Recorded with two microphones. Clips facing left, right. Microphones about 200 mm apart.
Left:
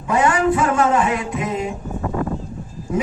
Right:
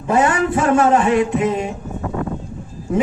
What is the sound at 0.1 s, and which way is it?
A man's voice, 30° right (ahead or behind).